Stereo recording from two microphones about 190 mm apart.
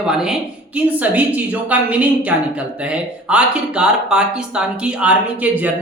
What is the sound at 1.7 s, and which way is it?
Speech, 5° right (ahead or behind).